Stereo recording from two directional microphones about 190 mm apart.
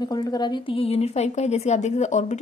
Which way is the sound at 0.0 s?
20° left (ahead or behind).